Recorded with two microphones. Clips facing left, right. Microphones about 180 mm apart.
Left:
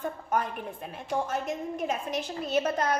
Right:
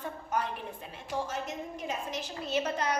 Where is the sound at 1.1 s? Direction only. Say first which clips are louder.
Left 5 dB; 55° left (ahead or behind).